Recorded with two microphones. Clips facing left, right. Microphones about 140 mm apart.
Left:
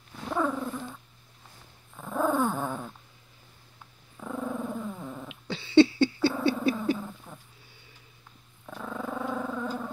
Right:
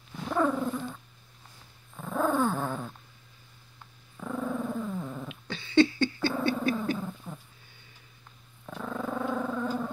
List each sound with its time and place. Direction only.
0.3 s dog: centre (ahead or behind)
2.0 s dog: 5° left (ahead or behind)
4.2 s dog: 10° left (ahead or behind)
5.3 s a sound: 25° left (ahead or behind)
6.1 s owl: 5° left (ahead or behind)
8.6 s dog: centre (ahead or behind)